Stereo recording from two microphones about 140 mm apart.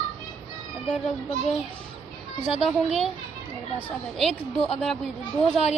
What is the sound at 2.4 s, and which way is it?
Speech, centre (ahead or behind).